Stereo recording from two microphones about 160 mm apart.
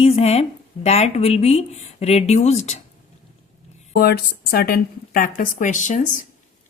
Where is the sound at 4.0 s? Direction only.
75° left (ahead or behind).